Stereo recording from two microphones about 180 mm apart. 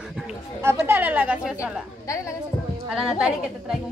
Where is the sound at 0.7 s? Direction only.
10° right (ahead or behind).